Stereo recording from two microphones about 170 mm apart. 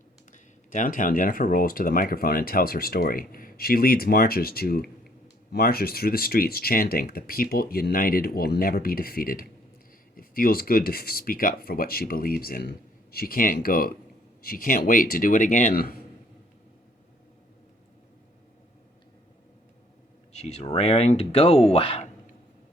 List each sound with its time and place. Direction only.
0.3 s speech: 50° left (ahead or behind)
20.3 s speech: 40° left (ahead or behind)